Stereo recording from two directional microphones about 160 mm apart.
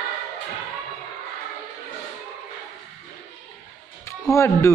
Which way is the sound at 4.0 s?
20° left (ahead or behind).